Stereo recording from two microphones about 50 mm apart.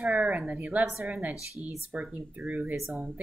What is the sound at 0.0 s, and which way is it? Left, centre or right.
Speech, right.